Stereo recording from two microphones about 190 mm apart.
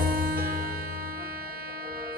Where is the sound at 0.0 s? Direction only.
50° right (ahead or behind).